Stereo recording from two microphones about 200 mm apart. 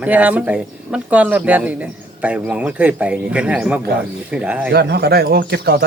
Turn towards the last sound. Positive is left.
turn(degrees=-55)  # may be behind; listen again after turning